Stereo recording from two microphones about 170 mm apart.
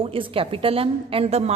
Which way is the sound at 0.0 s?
30° right (ahead or behind).